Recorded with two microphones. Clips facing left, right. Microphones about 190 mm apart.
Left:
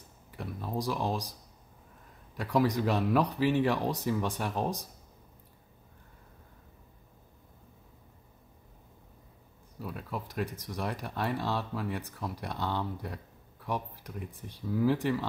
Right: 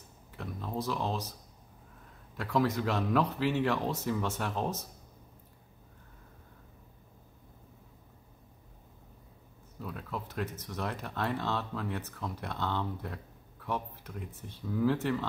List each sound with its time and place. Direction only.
0.4 s speech: 15° left (ahead or behind)
2.3 s speech: 15° left (ahead or behind)
9.8 s speech: 10° left (ahead or behind)